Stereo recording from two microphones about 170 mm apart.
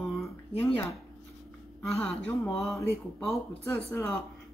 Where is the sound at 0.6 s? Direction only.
15° left (ahead or behind).